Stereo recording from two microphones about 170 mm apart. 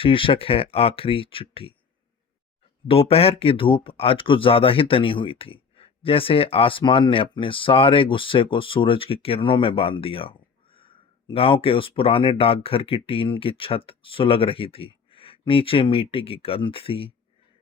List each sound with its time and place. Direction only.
0.0 s speech: 30° left (ahead or behind)
2.8 s speech: 35° left (ahead or behind)